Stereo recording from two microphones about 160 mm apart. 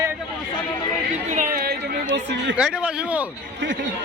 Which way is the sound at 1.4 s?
65° right (ahead or behind).